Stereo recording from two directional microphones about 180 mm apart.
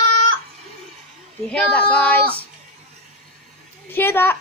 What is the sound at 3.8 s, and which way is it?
Speech, 10° left (ahead or behind).